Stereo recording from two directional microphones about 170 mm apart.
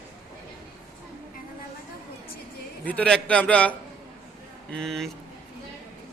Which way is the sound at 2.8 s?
5° left (ahead or behind).